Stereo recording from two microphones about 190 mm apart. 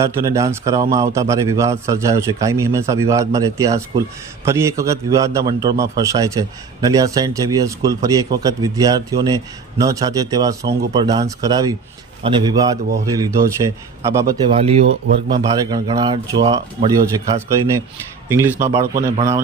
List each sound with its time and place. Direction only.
0.0 s a man's voice: 15° right (ahead or behind)
14.5 s a man's voice: 30° right (ahead or behind); by 19.1 s 15° right (ahead or behind)